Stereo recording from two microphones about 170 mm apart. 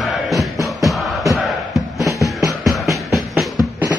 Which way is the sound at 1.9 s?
20° left (ahead or behind).